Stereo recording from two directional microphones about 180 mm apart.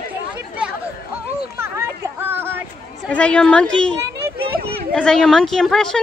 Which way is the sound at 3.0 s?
5° left (ahead or behind).